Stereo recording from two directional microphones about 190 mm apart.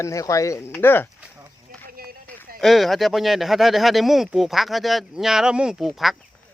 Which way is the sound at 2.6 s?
Centre (ahead or behind).